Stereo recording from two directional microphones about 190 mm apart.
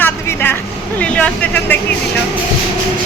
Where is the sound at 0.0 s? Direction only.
10° left (ahead or behind).